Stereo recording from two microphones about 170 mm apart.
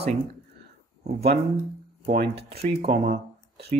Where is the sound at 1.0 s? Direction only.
65° right (ahead or behind).